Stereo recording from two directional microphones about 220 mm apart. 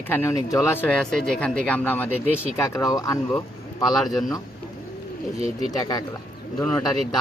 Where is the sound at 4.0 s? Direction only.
Centre (ahead or behind).